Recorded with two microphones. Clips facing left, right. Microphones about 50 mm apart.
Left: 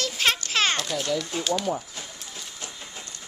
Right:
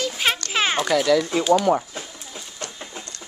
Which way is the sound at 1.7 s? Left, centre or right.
Right.